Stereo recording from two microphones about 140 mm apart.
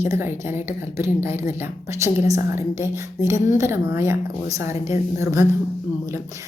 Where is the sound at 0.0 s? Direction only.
20° right (ahead or behind).